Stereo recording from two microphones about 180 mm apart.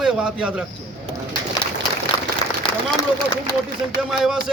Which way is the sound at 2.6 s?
25° left (ahead or behind).